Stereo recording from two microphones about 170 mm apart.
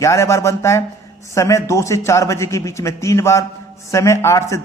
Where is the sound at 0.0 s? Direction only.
15° left (ahead or behind).